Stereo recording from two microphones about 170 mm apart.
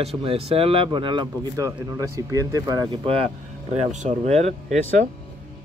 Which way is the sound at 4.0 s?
40° right (ahead or behind).